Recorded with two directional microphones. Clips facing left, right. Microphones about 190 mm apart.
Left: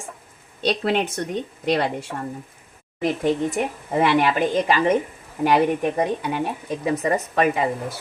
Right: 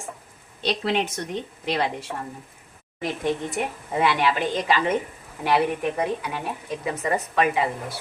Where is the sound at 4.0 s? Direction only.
45° left (ahead or behind).